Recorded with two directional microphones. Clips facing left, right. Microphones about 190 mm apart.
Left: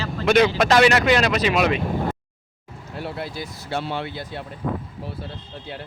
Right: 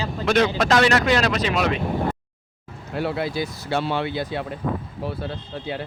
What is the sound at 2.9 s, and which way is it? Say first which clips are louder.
Speech: right 6 dB; 85° right.